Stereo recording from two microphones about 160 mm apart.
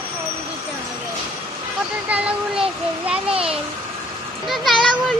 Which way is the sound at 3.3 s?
35° right (ahead or behind).